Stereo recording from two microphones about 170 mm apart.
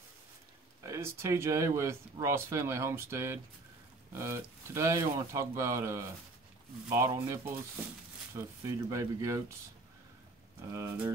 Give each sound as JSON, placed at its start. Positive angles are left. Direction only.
{"t": 0.8, "sound": "speech", "side_deg": -15}
{"t": 10.7, "sound": "speech", "side_deg": -15}